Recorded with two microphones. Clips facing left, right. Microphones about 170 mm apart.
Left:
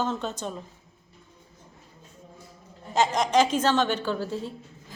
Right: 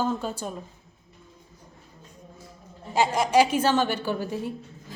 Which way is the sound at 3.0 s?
10° right (ahead or behind).